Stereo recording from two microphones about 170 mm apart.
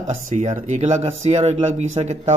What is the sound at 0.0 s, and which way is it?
Speech, 45° right (ahead or behind).